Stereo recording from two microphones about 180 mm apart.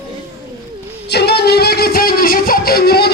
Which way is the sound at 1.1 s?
65° left (ahead or behind).